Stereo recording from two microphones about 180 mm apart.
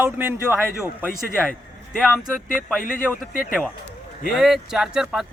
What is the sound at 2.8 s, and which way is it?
Speech, 50° left (ahead or behind).